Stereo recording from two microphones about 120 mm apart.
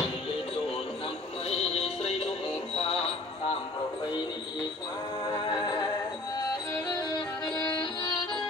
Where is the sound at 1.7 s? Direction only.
60° left (ahead or behind).